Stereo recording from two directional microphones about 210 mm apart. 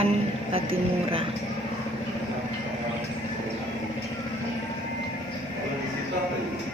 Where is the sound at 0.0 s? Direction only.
25° right (ahead or behind).